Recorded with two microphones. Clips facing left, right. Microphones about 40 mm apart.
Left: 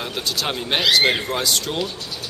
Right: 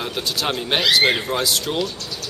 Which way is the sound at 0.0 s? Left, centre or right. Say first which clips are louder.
Right 1 dB; centre.